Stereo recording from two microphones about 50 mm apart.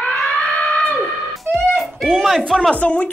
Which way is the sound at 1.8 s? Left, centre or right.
Centre.